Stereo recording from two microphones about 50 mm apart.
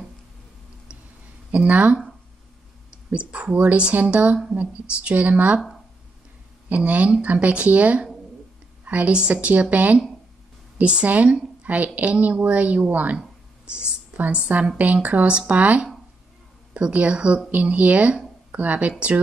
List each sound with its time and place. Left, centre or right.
1.5 s a woman's voice: right
3.1 s a woman's voice: right
6.7 s a woman's voice: right
13.7 s a sound: right
14.8 s a woman's voice: right